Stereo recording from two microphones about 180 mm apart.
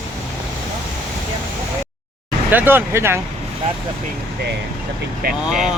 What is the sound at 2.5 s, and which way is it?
Speech, 10° right (ahead or behind).